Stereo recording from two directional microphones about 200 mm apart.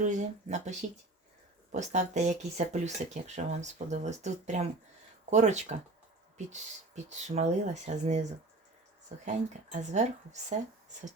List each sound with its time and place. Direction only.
0.0 s speech: 35° right (ahead or behind)